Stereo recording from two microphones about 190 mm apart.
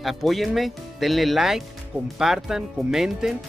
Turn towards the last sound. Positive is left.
turn(degrees=0)  # may be behind; listen again after turning